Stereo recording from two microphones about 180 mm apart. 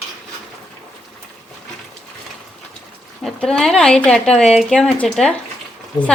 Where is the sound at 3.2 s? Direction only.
5° left (ahead or behind).